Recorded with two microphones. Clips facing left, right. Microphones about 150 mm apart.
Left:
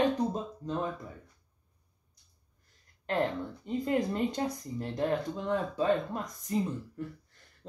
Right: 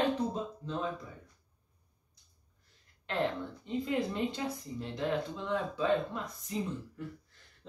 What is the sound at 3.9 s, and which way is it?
Speech, 45° left (ahead or behind).